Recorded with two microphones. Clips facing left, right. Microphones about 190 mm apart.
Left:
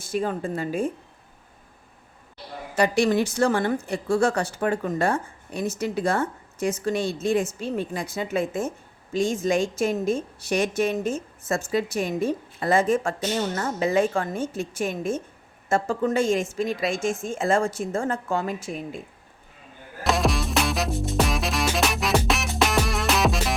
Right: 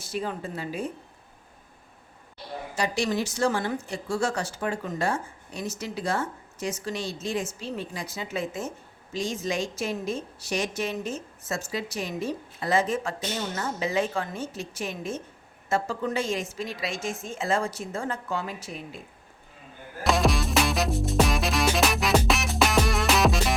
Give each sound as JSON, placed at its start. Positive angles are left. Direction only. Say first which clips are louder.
{"t": 0.0, "sound": "a woman's voice", "louder": "left 5 dB", "side_deg": 50}
{"t": 2.7, "sound": "a woman's voice", "louder": "left 7 dB", "side_deg": 60}
{"t": 20.1, "sound": "music", "louder": "even", "side_deg": 0}